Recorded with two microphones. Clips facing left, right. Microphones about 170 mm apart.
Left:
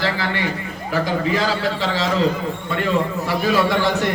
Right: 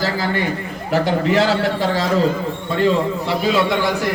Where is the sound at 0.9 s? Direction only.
70° right (ahead or behind); by 2.0 s 50° right (ahead or behind).